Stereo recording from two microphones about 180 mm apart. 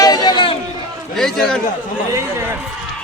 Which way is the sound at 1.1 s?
Centre (ahead or behind).